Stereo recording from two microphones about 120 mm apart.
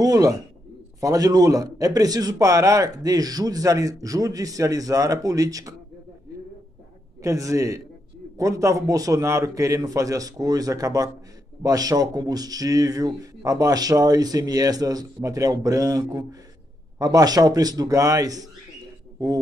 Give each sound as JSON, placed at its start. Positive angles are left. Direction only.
{"t": 0.0, "sound": "a man's voice", "side_deg": -30}
{"t": 7.2, "sound": "a man's voice", "side_deg": -25}